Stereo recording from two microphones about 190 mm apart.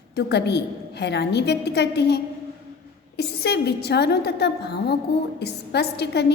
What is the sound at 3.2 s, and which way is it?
A woman's voice, 60° left (ahead or behind).